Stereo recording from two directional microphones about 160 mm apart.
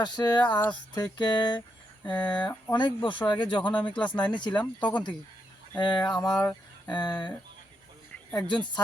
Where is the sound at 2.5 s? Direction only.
25° left (ahead or behind).